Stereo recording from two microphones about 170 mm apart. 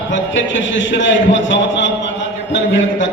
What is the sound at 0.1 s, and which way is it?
A man's voice, 90° left.